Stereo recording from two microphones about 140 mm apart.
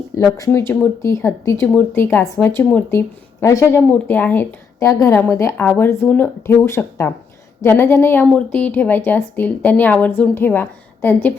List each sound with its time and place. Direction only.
0.3 s speech: 20° left (ahead or behind)